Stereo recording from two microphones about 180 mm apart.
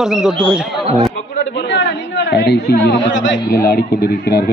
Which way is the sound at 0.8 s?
35° right (ahead or behind).